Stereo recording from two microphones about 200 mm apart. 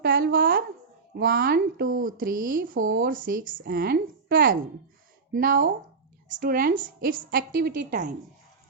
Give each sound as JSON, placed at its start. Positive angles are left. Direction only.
{"t": 0.0, "sound": "a woman's voice", "side_deg": -45}